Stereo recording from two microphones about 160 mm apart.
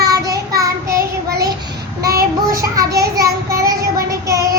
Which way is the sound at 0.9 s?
80° right.